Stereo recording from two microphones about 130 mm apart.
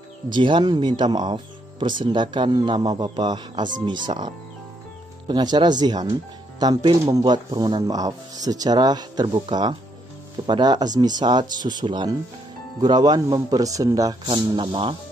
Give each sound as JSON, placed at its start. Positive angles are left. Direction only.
{"t": 0.3, "sound": "speech", "side_deg": -40}
{"t": 5.3, "sound": "speech", "side_deg": -35}
{"t": 14.3, "sound": "speech", "side_deg": -40}